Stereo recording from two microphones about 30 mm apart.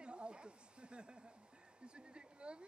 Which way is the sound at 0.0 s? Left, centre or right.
Right.